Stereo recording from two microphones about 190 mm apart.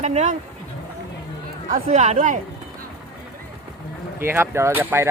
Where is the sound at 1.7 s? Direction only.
45° right (ahead or behind).